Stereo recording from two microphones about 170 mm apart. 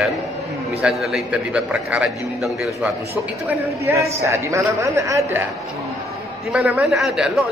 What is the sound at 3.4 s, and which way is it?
A man's voice, 15° right (ahead or behind).